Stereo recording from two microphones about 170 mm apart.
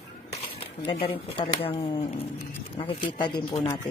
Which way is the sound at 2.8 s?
30° left (ahead or behind).